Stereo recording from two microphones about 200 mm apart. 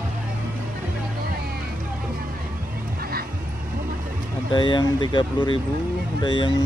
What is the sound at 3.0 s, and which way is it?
Dog, 50° right (ahead or behind).